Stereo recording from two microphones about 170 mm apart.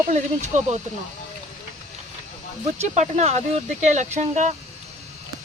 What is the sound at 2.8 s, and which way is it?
Speech, 40° right (ahead or behind).